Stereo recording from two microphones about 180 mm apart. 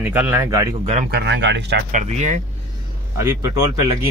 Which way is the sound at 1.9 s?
40° right (ahead or behind).